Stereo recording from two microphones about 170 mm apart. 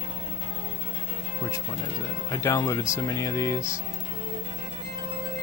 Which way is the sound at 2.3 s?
15° left (ahead or behind).